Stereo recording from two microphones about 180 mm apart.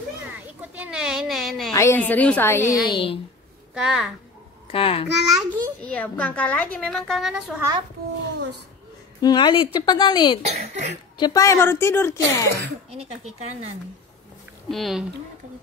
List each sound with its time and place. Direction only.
0.6 s a sound: 5° right (ahead or behind)
1.7 s speech: 15° left (ahead or behind)
2.9 s a woman's voice: 30° left (ahead or behind)
3.7 s a child's voice: centre (ahead or behind)
4.6 s a child's voice: 30° left (ahead or behind)
5.2 s a child's voice: centre (ahead or behind)
9.2 s a woman's voice: 25° left (ahead or behind)
10.4 s speech: 40° right (ahead or behind)
11.1 s speech: 20° left (ahead or behind)
13.0 s speech: 35° right (ahead or behind)
14.7 s a child's voice: centre (ahead or behind)